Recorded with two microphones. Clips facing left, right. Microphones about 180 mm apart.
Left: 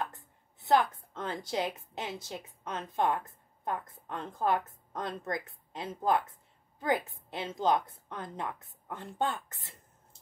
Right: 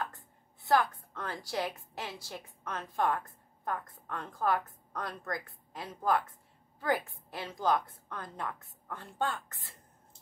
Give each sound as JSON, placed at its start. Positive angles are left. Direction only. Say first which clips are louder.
{"t": 0.6, "sound": "a woman's voice", "louder": "left 2 dB", "side_deg": 20}